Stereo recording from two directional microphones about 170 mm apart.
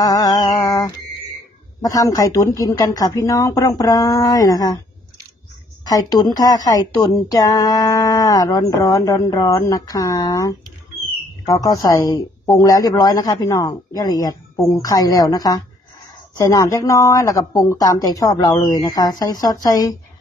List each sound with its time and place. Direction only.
0.0 s a sound: 20° left (ahead or behind)
1.8 s a woman's voice: 20° left (ahead or behind)
5.9 s a woman's voice: 20° left (ahead or behind)